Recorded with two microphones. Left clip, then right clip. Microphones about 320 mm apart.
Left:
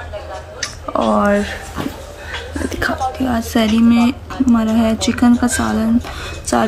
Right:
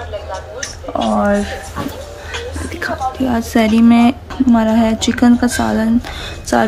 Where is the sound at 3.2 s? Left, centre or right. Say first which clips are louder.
Right 5 dB; centre.